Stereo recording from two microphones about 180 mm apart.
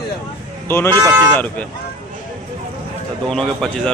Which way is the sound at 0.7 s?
10° left (ahead or behind).